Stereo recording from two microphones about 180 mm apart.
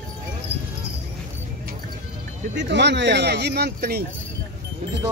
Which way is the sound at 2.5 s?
75° right (ahead or behind).